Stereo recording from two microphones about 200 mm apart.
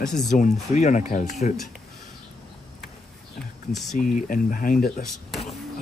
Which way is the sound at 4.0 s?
40° left (ahead or behind).